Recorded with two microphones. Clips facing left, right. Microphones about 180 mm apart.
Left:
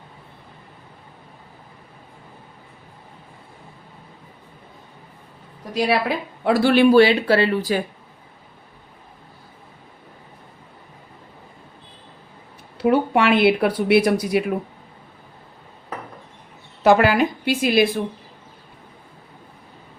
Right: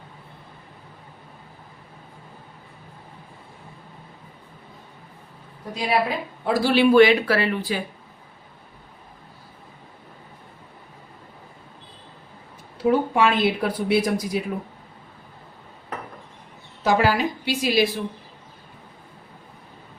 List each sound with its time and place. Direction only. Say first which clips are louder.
5.7 s speech: left 4 dB; 75° left (ahead or behind)
6.4 s speech: left 4 dB; 65° left (ahead or behind)
6.9 s speech: left 1 dB; 30° left (ahead or behind)
12.8 s speech: left 2 dB; 70° left (ahead or behind)
16.8 s a woman's voice: left 5 dB; 60° left (ahead or behind)